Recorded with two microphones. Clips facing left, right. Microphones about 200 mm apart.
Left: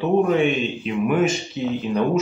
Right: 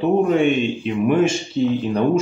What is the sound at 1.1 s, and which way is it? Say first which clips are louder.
Speech: right 3 dB; 30° right (ahead or behind).